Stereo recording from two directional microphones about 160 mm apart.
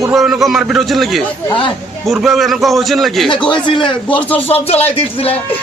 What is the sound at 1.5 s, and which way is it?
Speech, 30° left (ahead or behind).